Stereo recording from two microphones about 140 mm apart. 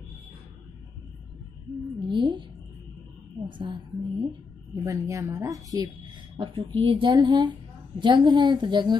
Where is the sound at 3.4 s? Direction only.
35° right (ahead or behind).